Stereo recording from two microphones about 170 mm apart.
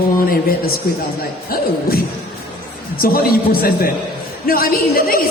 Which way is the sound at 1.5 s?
60° left (ahead or behind).